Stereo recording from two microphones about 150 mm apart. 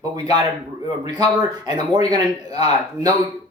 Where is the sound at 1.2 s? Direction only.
25° right (ahead or behind).